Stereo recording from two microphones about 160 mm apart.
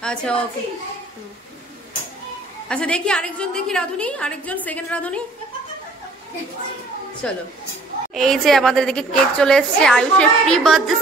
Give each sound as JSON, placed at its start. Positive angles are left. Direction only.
{"t": 0.0, "sound": "a child's voice", "side_deg": 5}
{"t": 2.7, "sound": "a woman's voice", "side_deg": 5}
{"t": 7.2, "sound": "a woman's voice", "side_deg": 5}